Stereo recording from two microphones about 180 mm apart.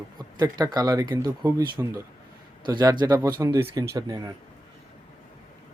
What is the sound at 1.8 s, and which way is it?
Speech, 10° right (ahead or behind).